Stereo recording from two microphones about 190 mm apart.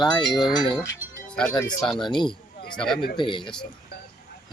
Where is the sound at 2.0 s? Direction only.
25° left (ahead or behind).